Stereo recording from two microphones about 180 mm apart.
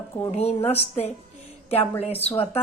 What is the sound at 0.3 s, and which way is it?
Speech, 35° left (ahead or behind).